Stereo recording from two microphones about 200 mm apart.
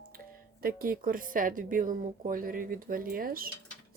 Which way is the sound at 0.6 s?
45° right (ahead or behind).